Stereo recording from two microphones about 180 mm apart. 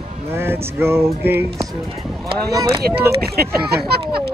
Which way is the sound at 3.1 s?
60° right (ahead or behind).